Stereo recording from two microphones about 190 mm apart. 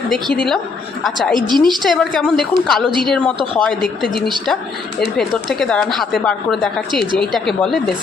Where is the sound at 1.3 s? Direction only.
25° right (ahead or behind).